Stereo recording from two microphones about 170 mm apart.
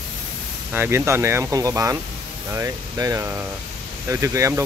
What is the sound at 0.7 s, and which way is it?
Speech, 15° right (ahead or behind).